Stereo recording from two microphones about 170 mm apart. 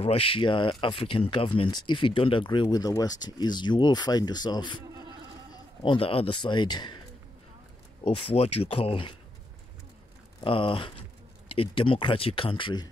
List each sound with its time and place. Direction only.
0.0 s speech: 35° left (ahead or behind)
8.0 s speech: 35° left (ahead or behind)
10.4 s speech: 30° left (ahead or behind)